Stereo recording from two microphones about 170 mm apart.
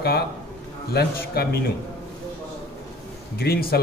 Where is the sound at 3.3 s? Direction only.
65° left (ahead or behind).